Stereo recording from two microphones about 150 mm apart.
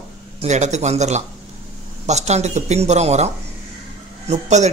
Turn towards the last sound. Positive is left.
turn(degrees=-50)  # may be behind; listen again after turning